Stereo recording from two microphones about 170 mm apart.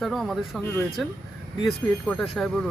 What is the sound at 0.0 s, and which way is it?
Speech, centre (ahead or behind).